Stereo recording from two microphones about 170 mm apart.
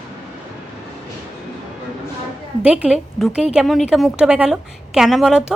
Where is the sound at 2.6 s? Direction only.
5° right (ahead or behind).